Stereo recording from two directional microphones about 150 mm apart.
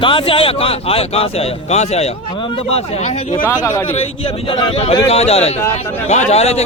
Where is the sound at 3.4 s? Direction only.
15° left (ahead or behind).